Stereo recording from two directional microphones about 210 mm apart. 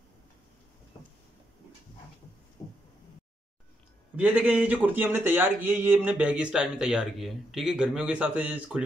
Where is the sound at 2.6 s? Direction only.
20° left (ahead or behind).